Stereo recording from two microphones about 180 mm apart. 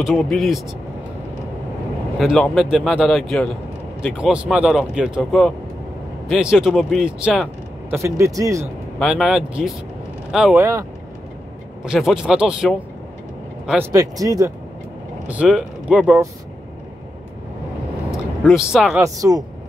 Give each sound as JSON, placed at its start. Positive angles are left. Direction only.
{"t": 0.2, "sound": "speech", "side_deg": 0}
{"t": 2.1, "sound": "speech", "side_deg": 0}
{"t": 7.9, "sound": "speech", "side_deg": -15}
{"t": 9.0, "sound": "speech", "side_deg": -5}
{"t": 10.6, "sound": "speech", "side_deg": -15}
{"t": 11.8, "sound": "speech", "side_deg": -5}
{"t": 13.9, "sound": "speech", "side_deg": -20}
{"t": 15.2, "sound": "speech", "side_deg": -5}
{"t": 18.1, "sound": "speech", "side_deg": -5}
{"t": 18.9, "sound": "speech", "side_deg": -20}